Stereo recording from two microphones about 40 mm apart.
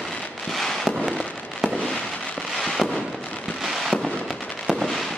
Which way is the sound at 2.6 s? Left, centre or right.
Centre.